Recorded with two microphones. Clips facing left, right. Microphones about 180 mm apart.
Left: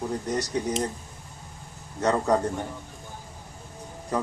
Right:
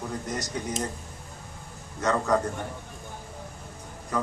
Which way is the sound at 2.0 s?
35° left (ahead or behind).